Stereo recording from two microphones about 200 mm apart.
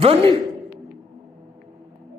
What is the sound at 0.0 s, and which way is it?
Speech, 30° right (ahead or behind).